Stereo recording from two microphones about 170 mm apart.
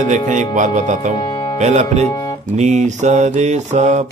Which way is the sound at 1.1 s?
25° left (ahead or behind).